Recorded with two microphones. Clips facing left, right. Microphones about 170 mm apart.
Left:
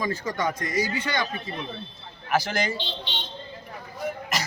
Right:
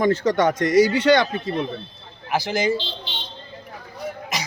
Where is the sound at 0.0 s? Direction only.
80° right.